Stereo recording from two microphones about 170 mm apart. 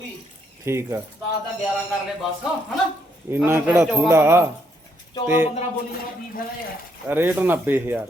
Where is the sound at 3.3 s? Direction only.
10° right (ahead or behind).